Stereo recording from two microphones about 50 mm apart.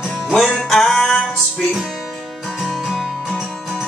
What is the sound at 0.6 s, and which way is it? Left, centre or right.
Music, centre.